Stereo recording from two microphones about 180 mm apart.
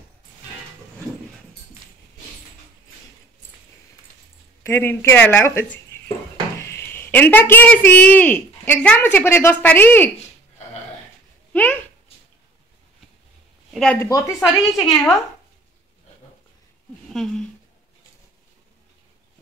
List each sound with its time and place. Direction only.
4.6 s speech: 15° left (ahead or behind)
11.5 s a sound: 10° left (ahead or behind)
13.7 s speech: 5° left (ahead or behind)
14.0 s speech: 15° left (ahead or behind)
14.4 s speech: centre (ahead or behind)
17.1 s speech: centre (ahead or behind)